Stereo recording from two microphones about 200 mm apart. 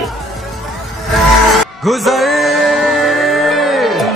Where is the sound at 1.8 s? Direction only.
Centre (ahead or behind).